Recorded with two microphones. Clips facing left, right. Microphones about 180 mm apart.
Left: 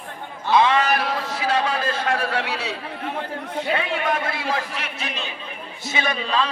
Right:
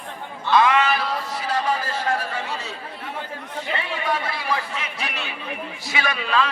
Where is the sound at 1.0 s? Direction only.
75° left (ahead or behind).